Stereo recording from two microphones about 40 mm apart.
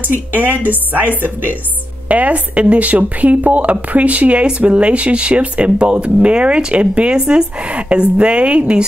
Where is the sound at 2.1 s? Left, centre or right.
Right.